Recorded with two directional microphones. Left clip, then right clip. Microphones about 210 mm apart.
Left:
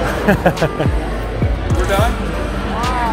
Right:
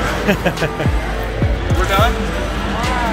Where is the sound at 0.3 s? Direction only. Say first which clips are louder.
Left 4 dB; 20° left (ahead or behind).